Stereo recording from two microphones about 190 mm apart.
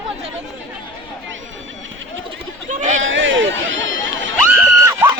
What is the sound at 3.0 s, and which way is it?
Chatter, 85° right.